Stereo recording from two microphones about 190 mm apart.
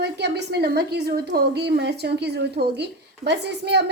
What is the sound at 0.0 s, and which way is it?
A woman's voice, 60° right (ahead or behind).